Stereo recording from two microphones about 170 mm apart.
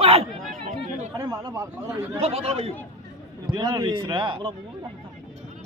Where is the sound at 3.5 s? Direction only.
20° right (ahead or behind).